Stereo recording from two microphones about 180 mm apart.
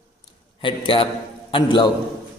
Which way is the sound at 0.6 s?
30° left (ahead or behind).